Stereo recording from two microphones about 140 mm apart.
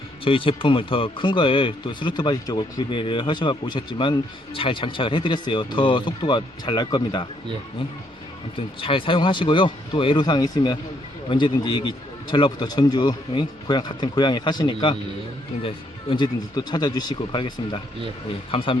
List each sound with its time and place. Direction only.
0.3 s speech: 40° left (ahead or behind)
8.5 s speech: 40° left (ahead or behind)